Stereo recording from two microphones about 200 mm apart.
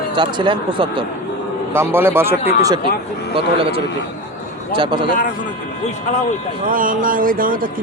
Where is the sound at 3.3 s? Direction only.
25° right (ahead or behind).